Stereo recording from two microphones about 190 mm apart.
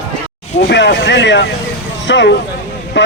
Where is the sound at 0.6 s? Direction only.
65° left (ahead or behind).